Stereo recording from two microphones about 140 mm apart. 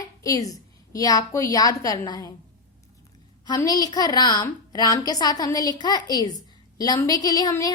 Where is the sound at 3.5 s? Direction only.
30° left (ahead or behind).